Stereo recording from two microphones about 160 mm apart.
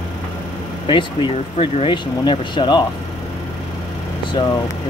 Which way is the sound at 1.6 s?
35° left (ahead or behind).